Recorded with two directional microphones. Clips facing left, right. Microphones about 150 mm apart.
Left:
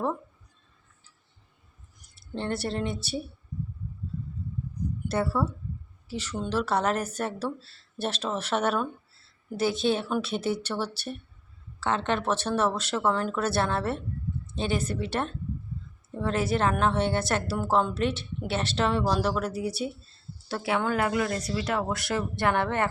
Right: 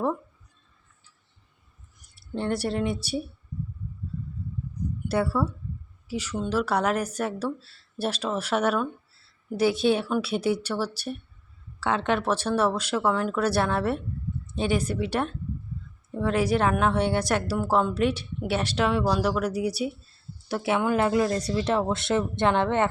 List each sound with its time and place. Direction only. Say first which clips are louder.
2.3 s a woman's voice: right 3 dB; 10° right (ahead or behind)
5.0 s a woman's voice: right 2 dB; 10° right (ahead or behind)